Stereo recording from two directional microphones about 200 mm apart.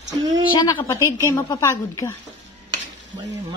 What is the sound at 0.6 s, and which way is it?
Speech, 15° left (ahead or behind).